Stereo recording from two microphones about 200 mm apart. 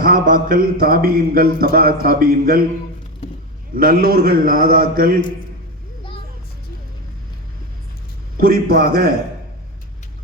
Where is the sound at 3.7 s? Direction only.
45° right (ahead or behind).